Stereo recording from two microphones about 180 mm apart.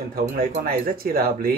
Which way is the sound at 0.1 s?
55° right (ahead or behind).